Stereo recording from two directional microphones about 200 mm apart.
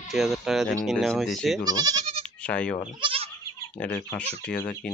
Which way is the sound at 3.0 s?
25° right (ahead or behind).